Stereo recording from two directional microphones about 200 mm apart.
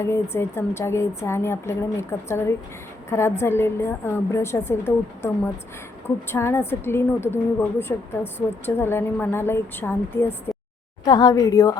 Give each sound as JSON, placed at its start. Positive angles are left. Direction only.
{"t": 0.0, "sound": "a woman's voice", "side_deg": 10}